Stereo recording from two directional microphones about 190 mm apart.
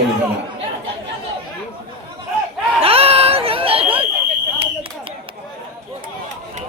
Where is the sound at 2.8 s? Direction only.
30° right (ahead or behind).